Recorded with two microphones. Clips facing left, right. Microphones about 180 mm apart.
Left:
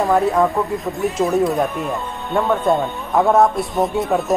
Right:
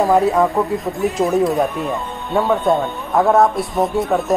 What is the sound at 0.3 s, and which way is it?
Speech, centre (ahead or behind).